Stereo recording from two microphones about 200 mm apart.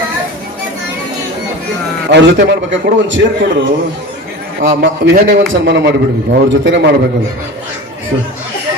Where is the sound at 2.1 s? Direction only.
60° right (ahead or behind).